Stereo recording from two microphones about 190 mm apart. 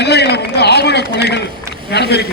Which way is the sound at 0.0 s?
60° left (ahead or behind).